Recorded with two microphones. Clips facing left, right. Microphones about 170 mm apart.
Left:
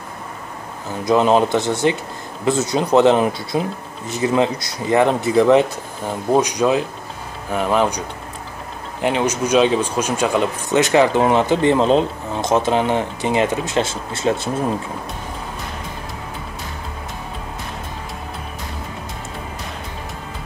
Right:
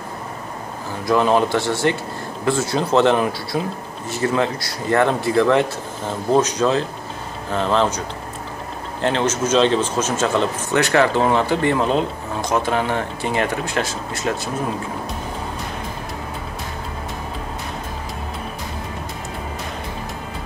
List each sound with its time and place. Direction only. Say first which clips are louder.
1.0 s speech: left 2 dB; 20° left (ahead or behind)
9.0 s speech: left 1 dB; 15° left (ahead or behind)